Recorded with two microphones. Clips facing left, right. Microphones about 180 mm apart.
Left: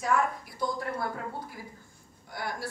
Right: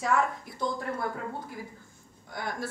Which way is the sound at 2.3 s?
20° right (ahead or behind).